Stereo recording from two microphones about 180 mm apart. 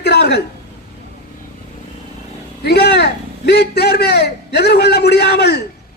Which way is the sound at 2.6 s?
65° left (ahead or behind).